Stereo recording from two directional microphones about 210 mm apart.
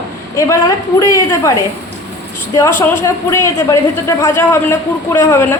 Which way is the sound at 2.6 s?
10° left (ahead or behind).